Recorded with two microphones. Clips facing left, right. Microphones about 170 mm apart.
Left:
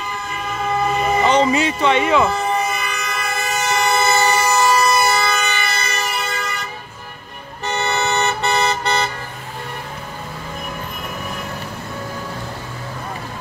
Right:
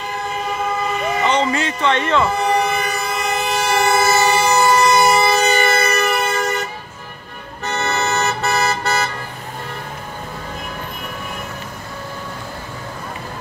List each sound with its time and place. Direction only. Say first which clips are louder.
1.2 s speech: left 3 dB; 15° left (ahead or behind)
2.4 s vehicle: right 3 dB; 75° right (ahead or behind)
2.8 s vehicle: right 4 dB; 35° right (ahead or behind)
3.3 s train: right 2 dB; 10° right (ahead or behind); by 5.8 s 40° right (ahead or behind)
5.8 s vehicle: right 7 dB; 55° right (ahead or behind)
7.6 s toot: even; centre (ahead or behind)